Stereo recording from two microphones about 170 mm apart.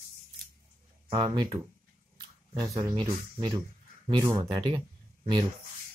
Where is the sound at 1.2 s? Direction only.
20° right (ahead or behind).